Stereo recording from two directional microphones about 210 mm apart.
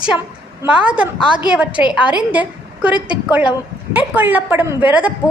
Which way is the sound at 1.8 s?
10° right (ahead or behind).